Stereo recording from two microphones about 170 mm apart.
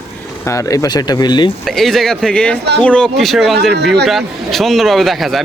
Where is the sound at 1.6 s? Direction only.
Centre (ahead or behind).